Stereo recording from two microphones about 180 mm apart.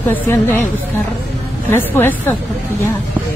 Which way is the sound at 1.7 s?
10° left (ahead or behind).